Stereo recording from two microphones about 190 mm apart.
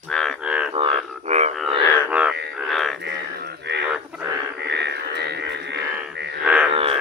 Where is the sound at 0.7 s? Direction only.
30° right (ahead or behind).